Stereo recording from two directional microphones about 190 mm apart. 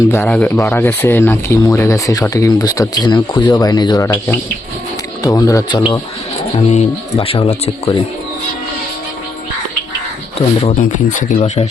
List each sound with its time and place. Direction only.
0.1 s speech: 10° left (ahead or behind)
6.6 s speech: 35° left (ahead or behind)
10.3 s speech: 35° left (ahead or behind)
10.8 s speech: 45° left (ahead or behind)